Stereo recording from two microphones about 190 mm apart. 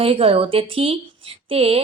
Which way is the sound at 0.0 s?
30° right (ahead or behind).